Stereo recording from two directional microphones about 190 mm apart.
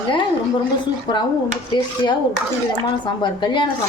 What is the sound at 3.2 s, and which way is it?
Speech, 25° left (ahead or behind).